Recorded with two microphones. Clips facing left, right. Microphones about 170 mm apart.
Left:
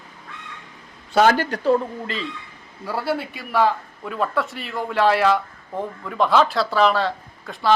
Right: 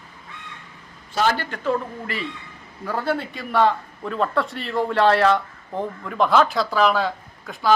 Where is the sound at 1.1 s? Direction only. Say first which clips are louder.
Left 5 dB; 45° left (ahead or behind).